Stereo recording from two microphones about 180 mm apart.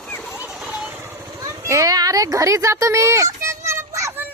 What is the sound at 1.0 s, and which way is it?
Vehicle, 15° right (ahead or behind).